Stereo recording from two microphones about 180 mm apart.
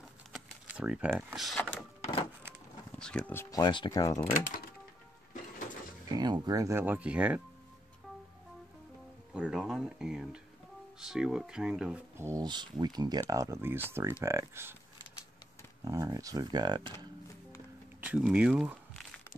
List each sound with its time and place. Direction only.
0.3 s power windows: 5° right (ahead or behind)
3.0 s speech: 5° left (ahead or behind)
6.1 s speech: 20° right (ahead or behind); by 7.4 s 5° right (ahead or behind)
9.3 s speech: 5° right (ahead or behind)
15.8 s speech: 20° right (ahead or behind)
18.0 s a sound: 5° right (ahead or behind)